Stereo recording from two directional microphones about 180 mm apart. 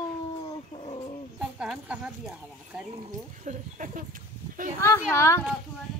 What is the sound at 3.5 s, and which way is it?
Speech, 45° right (ahead or behind).